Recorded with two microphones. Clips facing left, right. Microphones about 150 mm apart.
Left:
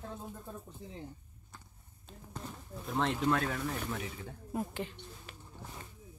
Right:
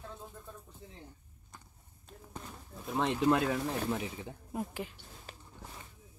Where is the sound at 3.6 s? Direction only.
30° right (ahead or behind).